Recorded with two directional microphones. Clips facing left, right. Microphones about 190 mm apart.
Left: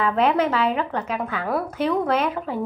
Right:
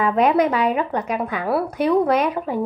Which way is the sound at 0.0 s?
15° right (ahead or behind).